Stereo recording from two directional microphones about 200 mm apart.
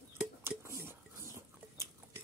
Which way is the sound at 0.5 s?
15° right (ahead or behind).